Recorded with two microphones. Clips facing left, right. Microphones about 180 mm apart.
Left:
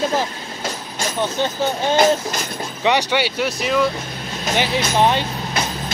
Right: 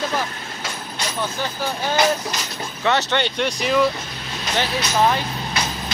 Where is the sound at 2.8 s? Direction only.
15° left (ahead or behind).